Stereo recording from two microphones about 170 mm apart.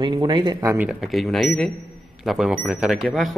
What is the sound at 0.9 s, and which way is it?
A man's voice, centre (ahead or behind).